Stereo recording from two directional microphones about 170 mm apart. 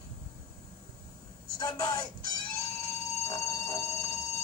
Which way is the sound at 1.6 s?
20° left (ahead or behind).